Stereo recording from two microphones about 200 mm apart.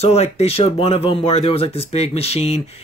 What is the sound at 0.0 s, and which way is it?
Speech, 30° left (ahead or behind).